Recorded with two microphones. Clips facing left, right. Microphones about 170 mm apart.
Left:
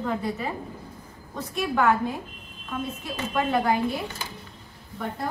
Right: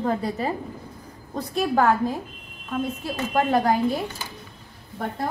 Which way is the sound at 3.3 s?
40° right (ahead or behind).